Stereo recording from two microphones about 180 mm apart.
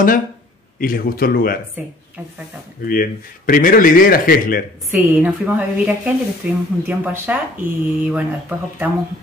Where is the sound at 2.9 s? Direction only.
50° left (ahead or behind).